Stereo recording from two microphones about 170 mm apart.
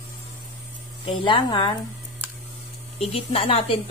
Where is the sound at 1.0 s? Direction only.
30° left (ahead or behind).